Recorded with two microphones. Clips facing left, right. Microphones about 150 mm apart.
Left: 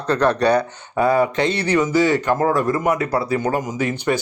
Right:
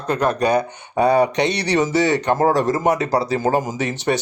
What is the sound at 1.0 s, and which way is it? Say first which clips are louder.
Speech: right 1 dB; 20° right (ahead or behind).